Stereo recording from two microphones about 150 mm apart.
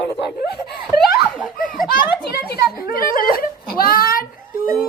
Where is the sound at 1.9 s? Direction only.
80° left.